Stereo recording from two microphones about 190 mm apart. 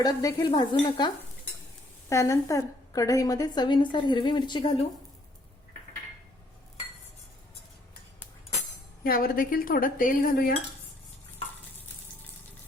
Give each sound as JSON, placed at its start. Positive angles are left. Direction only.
{"t": 0.0, "sound": "a woman's voice", "side_deg": 20}
{"t": 9.0, "sound": "cutlery", "side_deg": 50}